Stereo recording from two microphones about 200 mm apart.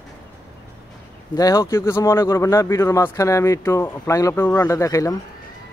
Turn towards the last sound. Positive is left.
turn(degrees=15)  # may be behind; listen again after turning